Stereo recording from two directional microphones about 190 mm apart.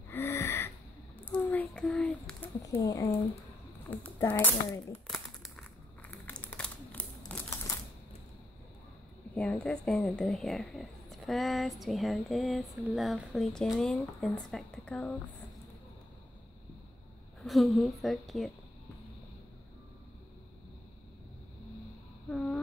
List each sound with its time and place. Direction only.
0.1 s wheeze: 15° left (ahead or behind)
1.2 s a sound: 10° left (ahead or behind)
2.6 s speech: 20° left (ahead or behind)
4.9 s crumpling: centre (ahead or behind)
9.3 s speech: 5° left (ahead or behind)
17.4 s speech: centre (ahead or behind)
22.3 s a sound: 5° left (ahead or behind)